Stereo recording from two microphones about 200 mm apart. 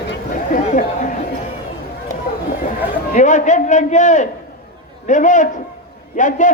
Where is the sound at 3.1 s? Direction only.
40° left (ahead or behind).